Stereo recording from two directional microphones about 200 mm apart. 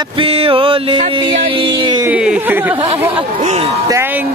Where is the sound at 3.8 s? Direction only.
10° right (ahead or behind).